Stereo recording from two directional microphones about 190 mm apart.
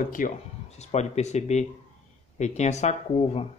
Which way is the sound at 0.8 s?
35° left (ahead or behind).